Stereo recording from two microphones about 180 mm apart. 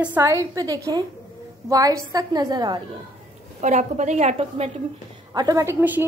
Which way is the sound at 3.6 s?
40° right (ahead or behind).